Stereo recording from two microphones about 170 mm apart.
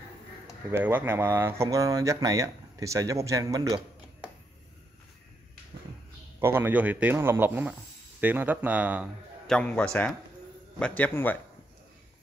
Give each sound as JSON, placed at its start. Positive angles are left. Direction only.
{"t": 0.7, "sound": "speech", "side_deg": -10}
{"t": 6.4, "sound": "speech", "side_deg": -10}
{"t": 9.5, "sound": "speech", "side_deg": 5}